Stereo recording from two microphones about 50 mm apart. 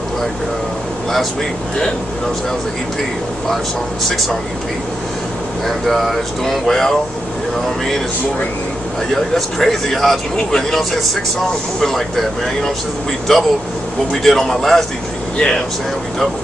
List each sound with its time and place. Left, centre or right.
5.7 s speech: centre
9.1 s speech: centre
15.3 s speech: centre